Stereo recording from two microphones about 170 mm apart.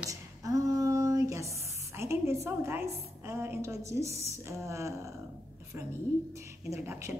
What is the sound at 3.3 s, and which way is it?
A woman's voice, 15° right (ahead or behind).